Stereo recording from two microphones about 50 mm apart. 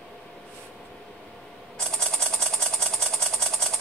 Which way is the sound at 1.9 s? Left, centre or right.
Centre.